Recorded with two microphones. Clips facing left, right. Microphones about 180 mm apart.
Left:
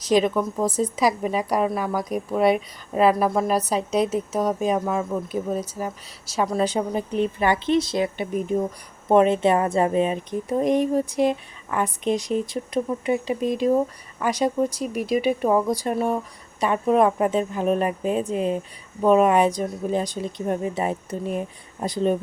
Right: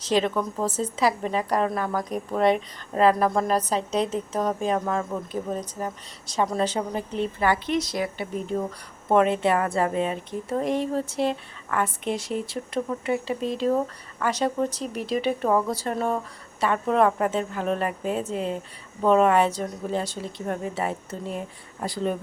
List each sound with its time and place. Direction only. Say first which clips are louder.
0.0 s speech: left 4 dB; 10° left (ahead or behind)